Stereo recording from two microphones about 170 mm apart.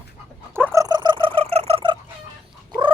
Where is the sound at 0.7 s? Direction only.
25° right (ahead or behind).